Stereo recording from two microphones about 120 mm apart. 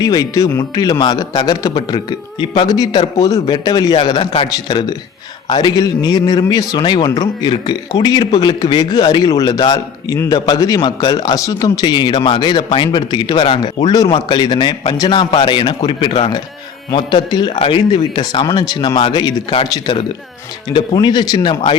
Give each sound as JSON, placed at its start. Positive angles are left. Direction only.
{"t": 0.0, "sound": "a man's voice", "side_deg": 30}
{"t": 17.6, "sound": "speech", "side_deg": 55}
{"t": 18.1, "sound": "a man's voice", "side_deg": 40}
{"t": 20.7, "sound": "a man's voice", "side_deg": 40}